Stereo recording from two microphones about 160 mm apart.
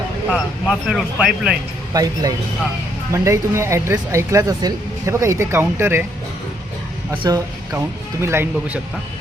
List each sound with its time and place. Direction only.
0.3 s speech: 5° right (ahead or behind)
1.9 s speech: 20° right (ahead or behind)
7.2 s speech: 25° right (ahead or behind)